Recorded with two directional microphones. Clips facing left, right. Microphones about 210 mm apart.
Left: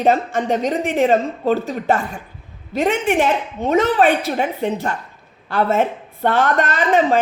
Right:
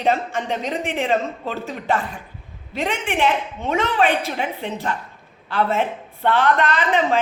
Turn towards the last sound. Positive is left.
turn(degrees=45)  # may be behind; listen again after turning